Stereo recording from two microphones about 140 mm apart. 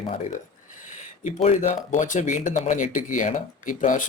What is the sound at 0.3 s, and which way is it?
Speech, 65° left (ahead or behind).